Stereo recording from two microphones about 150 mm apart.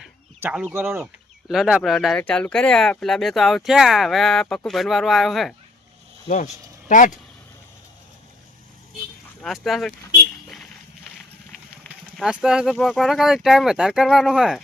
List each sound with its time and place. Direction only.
0.4 s speech: 10° right (ahead or behind)
1.5 s speech: 5° right (ahead or behind)
6.2 s speech: 55° left (ahead or behind)
9.4 s speech: centre (ahead or behind)
11.8 s speech: centre (ahead or behind)